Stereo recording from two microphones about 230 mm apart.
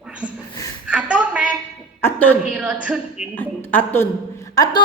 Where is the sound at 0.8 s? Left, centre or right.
Centre.